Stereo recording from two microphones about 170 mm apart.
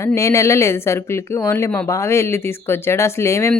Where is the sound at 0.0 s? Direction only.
15° left (ahead or behind).